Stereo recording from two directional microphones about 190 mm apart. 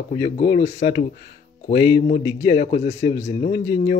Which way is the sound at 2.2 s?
20° left (ahead or behind).